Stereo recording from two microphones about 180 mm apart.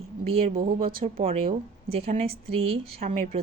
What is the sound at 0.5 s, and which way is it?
Speech, 50° right (ahead or behind).